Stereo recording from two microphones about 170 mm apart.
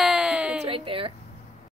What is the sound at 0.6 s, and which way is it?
Speech, 30° right (ahead or behind).